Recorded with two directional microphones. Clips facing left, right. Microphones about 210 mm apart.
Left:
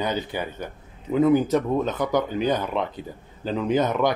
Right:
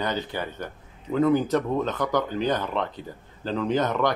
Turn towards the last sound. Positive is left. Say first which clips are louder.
# left 2 dB
turn(degrees=10)  # may be behind; listen again after turning